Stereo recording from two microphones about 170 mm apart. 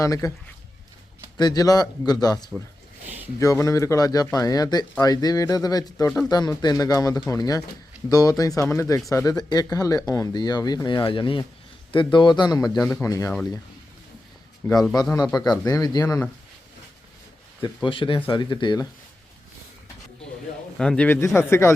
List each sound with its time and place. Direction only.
0.0 s speech: 20° left (ahead or behind)
1.4 s speech: 25° left (ahead or behind)
14.6 s a man's voice: 15° left (ahead or behind)
17.8 s speech: 30° left (ahead or behind)
20.7 s a man's voice: 5° left (ahead or behind)